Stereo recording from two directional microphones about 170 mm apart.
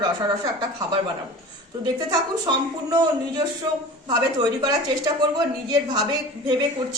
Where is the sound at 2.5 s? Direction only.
25° right (ahead or behind).